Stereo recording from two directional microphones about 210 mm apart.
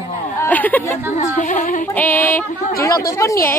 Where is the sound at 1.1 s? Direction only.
35° left (ahead or behind).